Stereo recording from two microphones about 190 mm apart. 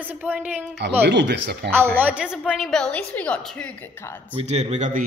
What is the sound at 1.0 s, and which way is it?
Speech, 65° right (ahead or behind).